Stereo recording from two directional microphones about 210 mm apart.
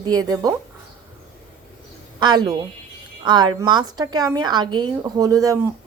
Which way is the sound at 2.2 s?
20° right (ahead or behind).